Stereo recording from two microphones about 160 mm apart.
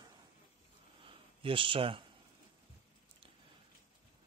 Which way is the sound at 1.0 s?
35° right (ahead or behind).